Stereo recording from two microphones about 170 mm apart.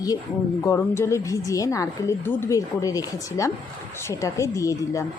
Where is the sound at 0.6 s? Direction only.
15° left (ahead or behind).